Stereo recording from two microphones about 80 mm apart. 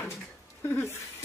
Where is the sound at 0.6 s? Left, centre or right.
Left.